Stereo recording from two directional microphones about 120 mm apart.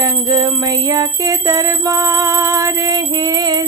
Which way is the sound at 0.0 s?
30° right (ahead or behind).